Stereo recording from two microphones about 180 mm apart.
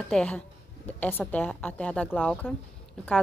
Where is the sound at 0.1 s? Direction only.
5° left (ahead or behind).